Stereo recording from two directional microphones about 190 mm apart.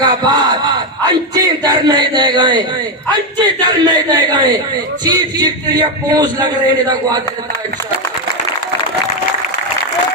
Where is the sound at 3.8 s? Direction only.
25° right (ahead or behind).